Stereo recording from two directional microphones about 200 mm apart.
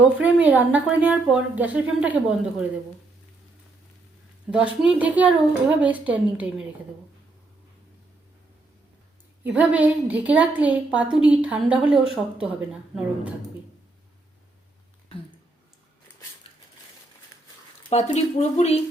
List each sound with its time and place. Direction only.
0.2 s a woman's voice: 5° right (ahead or behind)
4.5 s a woman's voice: 5° right (ahead or behind)
9.4 s a woman's voice: 10° right (ahead or behind)
17.8 s speech: 35° left (ahead or behind)